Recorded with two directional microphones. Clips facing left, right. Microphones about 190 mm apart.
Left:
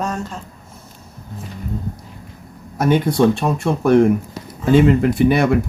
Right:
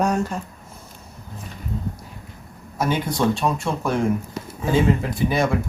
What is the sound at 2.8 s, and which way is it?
Speech, 55° left (ahead or behind).